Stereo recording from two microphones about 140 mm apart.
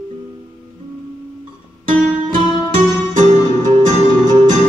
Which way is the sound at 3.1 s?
65° right (ahead or behind).